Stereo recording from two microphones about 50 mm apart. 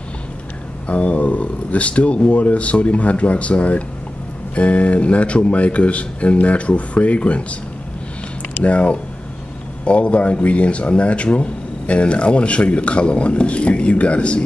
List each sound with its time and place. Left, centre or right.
0.8 s speech: left
8.6 s speech: left